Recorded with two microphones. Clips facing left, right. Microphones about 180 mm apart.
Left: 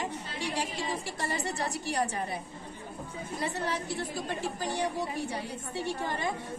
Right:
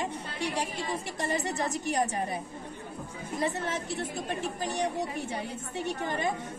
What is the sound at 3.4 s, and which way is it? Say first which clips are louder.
A woman's voice: right 2 dB; 20° right (ahead or behind).